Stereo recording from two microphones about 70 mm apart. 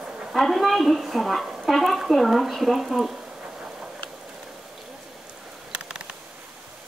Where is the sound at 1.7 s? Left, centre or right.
Centre.